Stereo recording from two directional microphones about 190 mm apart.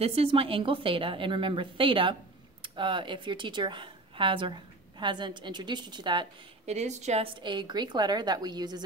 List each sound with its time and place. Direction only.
0.0 s a woman's voice: 30° right (ahead or behind)
6.7 s a woman's voice: 35° right (ahead or behind)
7.4 s a woman's voice: 25° right (ahead or behind)